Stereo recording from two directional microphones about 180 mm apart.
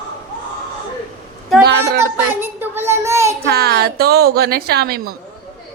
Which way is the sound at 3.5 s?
65° right (ahead or behind).